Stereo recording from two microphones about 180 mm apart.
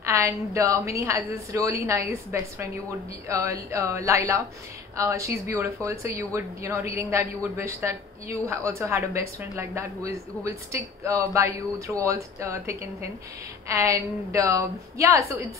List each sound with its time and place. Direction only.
0.0 s a woman's voice: 15° right (ahead or behind)